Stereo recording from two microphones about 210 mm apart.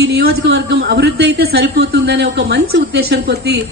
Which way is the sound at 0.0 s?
50° right (ahead or behind).